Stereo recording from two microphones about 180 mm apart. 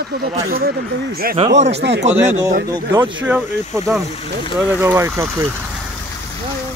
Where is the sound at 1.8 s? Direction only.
70° right (ahead or behind).